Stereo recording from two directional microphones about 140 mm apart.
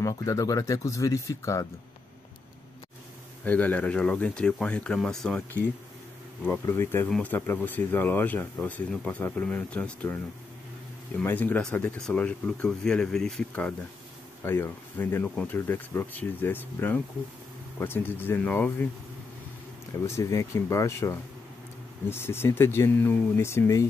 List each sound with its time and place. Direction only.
0.0 s speech: 25° left (ahead or behind)
3.4 s speech: 10° left (ahead or behind)
11.2 s speech: 10° left (ahead or behind)
20.1 s speech: 20° left (ahead or behind)